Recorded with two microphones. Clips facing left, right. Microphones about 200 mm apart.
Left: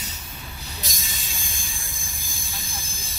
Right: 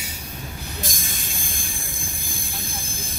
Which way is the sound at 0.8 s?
50° right (ahead or behind).